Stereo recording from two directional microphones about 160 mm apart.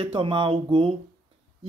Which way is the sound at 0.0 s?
35° right (ahead or behind).